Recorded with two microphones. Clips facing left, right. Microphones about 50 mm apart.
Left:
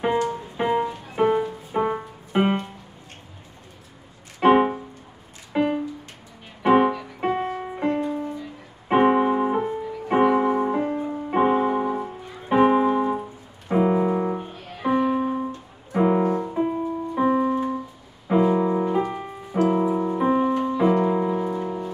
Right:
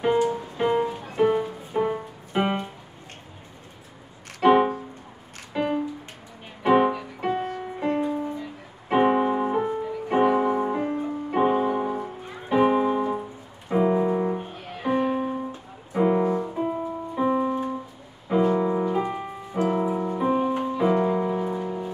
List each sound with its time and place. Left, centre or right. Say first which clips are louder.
0.6 s music: left 1 dB; centre
0.8 s music: right 1 dB; centre
1.1 s music: left 1 dB; centre
4.4 s music: left 1 dB; centre
7.9 s music: even; centre
8.8 s music: left 2 dB; centre
12.4 s piano: left 3 dB; centre
14.4 s music: left 2 dB; centre
18.3 s piano: left 2 dB; centre
19.0 s music: even; centre